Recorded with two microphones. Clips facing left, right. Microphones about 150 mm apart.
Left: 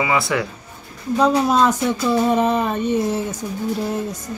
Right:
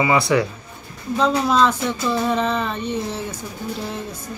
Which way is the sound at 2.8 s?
45° left (ahead or behind).